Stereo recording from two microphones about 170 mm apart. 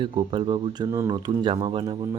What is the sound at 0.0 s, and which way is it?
Speech, 30° right (ahead or behind).